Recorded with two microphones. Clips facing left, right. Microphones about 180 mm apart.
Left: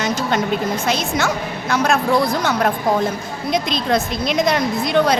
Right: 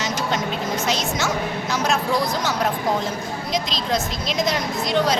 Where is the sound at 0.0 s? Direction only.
55° left (ahead or behind).